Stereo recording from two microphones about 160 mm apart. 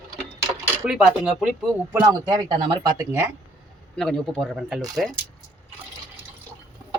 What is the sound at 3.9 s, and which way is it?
Speech, 5° left (ahead or behind).